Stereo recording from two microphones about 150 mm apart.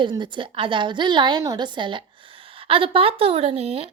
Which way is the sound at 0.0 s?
30° right (ahead or behind).